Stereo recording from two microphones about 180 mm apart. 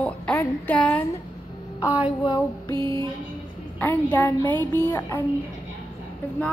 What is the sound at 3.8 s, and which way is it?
Female singing, 10° left (ahead or behind).